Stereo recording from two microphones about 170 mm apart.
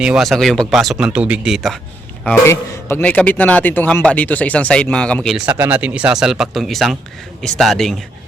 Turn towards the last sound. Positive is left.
turn(degrees=0)  # may be behind; listen again after turning